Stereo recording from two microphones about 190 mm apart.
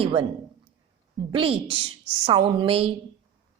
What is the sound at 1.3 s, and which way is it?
Speech, 30° right (ahead or behind).